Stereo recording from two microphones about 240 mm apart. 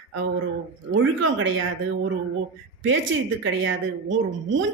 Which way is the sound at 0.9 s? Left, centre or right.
Right.